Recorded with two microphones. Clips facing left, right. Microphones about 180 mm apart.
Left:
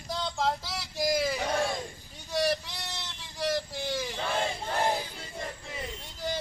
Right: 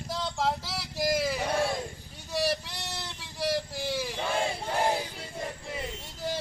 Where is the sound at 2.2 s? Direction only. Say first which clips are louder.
Left 1 dB; 5° right (ahead or behind).